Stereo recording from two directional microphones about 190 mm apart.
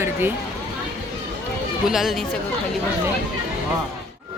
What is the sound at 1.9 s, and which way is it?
Speech, centre (ahead or behind).